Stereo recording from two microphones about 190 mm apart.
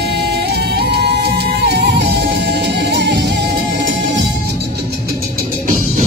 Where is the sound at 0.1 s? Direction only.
60° right (ahead or behind).